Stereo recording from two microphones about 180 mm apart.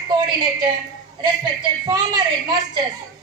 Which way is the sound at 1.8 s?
20° right (ahead or behind).